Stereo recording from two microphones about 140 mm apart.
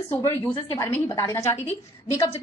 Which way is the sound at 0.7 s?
15° left (ahead or behind).